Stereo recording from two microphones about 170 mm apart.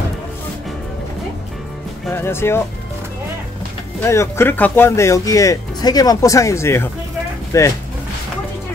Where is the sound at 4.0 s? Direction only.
15° left (ahead or behind).